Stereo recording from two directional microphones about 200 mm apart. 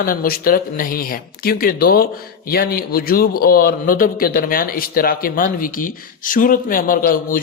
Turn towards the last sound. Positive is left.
turn(degrees=45)  # may be behind; listen again after turning